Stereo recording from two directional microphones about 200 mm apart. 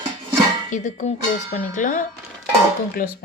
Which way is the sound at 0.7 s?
35° left (ahead or behind).